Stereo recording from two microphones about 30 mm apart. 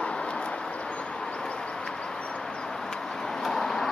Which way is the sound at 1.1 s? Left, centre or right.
Left.